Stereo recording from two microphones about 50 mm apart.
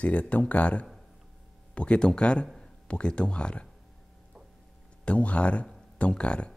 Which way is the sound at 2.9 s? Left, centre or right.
Centre.